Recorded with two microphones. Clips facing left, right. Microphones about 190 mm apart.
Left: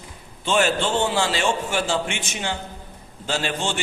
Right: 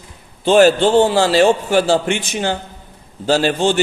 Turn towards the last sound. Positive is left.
turn(degrees=-35)  # may be behind; listen again after turning